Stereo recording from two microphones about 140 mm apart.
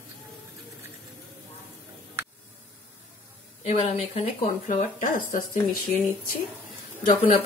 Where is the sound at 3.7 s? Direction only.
50° left (ahead or behind).